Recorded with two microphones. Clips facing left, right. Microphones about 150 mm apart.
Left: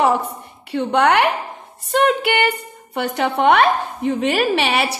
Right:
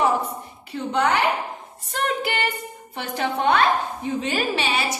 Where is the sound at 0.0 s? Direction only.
70° left (ahead or behind).